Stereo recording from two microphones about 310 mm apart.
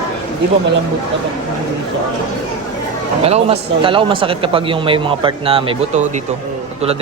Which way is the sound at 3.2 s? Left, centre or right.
Centre.